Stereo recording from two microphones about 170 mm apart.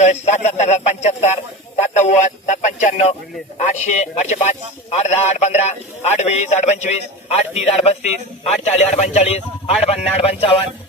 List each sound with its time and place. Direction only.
0.0 s a man's voice: 45° left (ahead or behind)